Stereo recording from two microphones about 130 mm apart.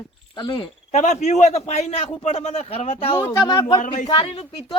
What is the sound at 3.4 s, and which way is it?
Speech, 35° left (ahead or behind).